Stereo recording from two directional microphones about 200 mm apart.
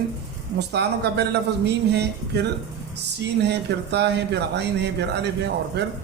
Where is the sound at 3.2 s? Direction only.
55° right (ahead or behind).